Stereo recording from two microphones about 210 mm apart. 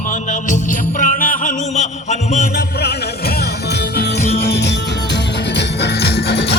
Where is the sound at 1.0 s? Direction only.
40° left (ahead or behind).